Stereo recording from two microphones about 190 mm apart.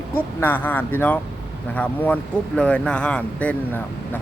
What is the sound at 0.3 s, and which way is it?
Speech, 10° left (ahead or behind).